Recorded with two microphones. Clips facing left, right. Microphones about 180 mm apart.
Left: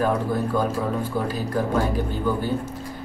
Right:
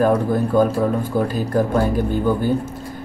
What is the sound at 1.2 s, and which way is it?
Speech, 50° right (ahead or behind).